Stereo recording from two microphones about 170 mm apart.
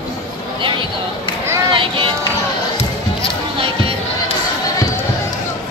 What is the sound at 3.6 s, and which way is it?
Crowd, 30° right (ahead or behind).